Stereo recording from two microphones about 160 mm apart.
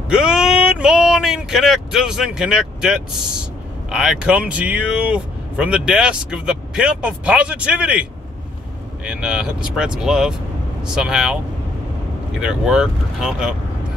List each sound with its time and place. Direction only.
0.1 s speech: 5° right (ahead or behind)
9.0 s speech: 5° right (ahead or behind)
12.4 s speech: 5° right (ahead or behind)